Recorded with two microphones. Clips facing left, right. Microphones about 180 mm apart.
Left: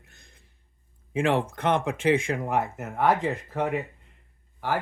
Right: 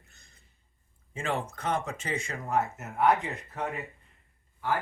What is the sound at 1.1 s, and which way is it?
Speech, 90° left.